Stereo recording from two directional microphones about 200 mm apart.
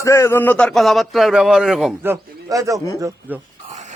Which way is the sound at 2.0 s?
15° right (ahead or behind).